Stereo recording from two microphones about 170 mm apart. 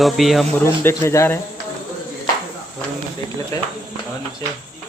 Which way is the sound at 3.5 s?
20° left (ahead or behind).